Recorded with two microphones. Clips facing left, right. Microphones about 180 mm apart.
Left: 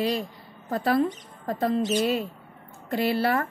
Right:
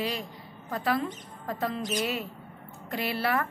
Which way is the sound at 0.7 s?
35° left (ahead or behind).